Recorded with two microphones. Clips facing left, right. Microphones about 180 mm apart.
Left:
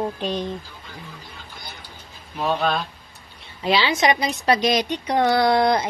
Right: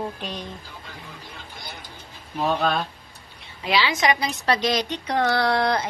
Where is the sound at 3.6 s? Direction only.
30° left (ahead or behind).